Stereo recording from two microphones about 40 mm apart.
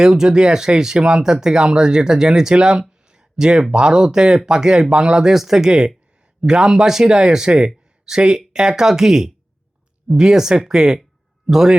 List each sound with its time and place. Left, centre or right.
0.0 s a man's voice: centre